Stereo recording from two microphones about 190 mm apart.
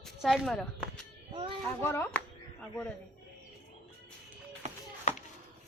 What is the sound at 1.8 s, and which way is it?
Speech, 15° left (ahead or behind).